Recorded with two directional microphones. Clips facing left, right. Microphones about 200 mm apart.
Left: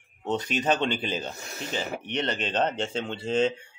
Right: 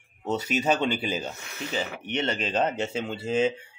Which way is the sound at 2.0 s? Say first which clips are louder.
Right 2 dB; 5° right (ahead or behind).